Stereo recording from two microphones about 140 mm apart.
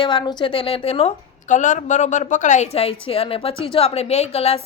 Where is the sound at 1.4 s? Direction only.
60° left (ahead or behind).